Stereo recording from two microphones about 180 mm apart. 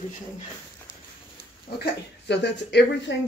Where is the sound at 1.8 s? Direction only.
70° left (ahead or behind).